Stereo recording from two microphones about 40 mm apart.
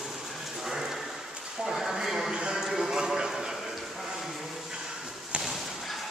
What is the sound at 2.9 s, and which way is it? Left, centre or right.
Clip-clop, centre.